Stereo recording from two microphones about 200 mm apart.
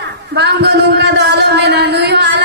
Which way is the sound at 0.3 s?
55° right (ahead or behind).